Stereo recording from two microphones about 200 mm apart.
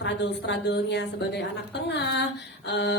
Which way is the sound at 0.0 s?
60° left (ahead or behind).